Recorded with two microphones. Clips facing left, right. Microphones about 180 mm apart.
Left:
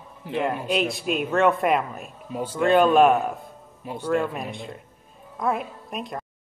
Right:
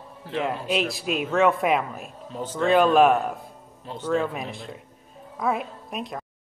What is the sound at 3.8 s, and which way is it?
Speech, 10° left (ahead or behind).